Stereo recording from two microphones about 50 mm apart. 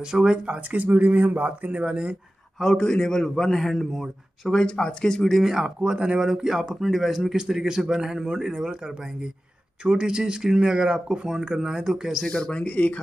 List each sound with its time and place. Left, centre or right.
0.0 s a man's voice: centre
0.6 s speech: right
2.6 s a man's voice: centre
4.5 s a man's voice: centre
5.4 s a man's voice: centre
5.8 s a man's voice: centre
12.3 s speech: centre